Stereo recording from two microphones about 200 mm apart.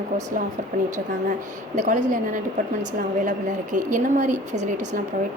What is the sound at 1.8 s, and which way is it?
Speech, 40° right (ahead or behind).